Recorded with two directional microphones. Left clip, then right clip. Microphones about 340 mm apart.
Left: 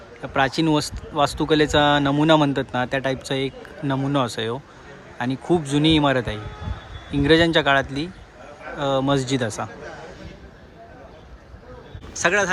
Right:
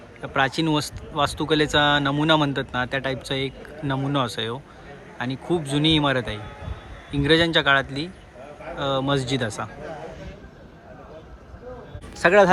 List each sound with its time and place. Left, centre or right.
0.2 s speech: centre
12.1 s speech: centre